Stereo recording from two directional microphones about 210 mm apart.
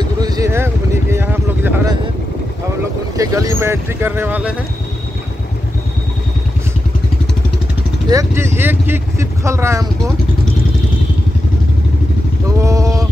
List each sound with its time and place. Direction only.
0.2 s vehicle: 15° right (ahead or behind)
1.1 s a sound: 10° right (ahead or behind)
3.2 s speech: 15° right (ahead or behind)
8.1 s speech: 15° right (ahead or behind)
12.5 s vehicle: 15° right (ahead or behind)